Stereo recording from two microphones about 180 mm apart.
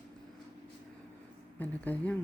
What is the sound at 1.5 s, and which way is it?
Speech, 10° left (ahead or behind).